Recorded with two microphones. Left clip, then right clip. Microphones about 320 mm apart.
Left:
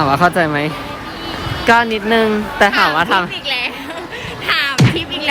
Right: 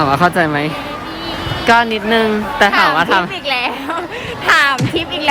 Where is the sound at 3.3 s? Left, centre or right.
Right.